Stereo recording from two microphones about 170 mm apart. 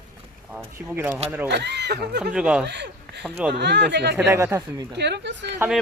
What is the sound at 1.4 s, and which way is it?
Speech, 85° right.